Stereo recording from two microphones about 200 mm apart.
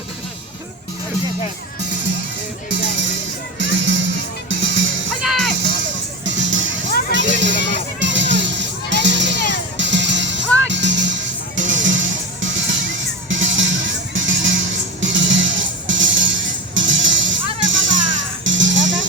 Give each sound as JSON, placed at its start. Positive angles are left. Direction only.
{"t": 2.6, "sound": "music", "side_deg": -65}
{"t": 5.2, "sound": "music", "side_deg": 0}
{"t": 6.2, "sound": "music", "side_deg": -65}